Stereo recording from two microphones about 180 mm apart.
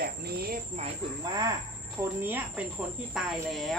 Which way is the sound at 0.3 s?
60° right (ahead or behind).